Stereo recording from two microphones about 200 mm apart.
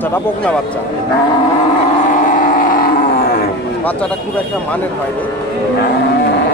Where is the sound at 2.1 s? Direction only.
45° left (ahead or behind).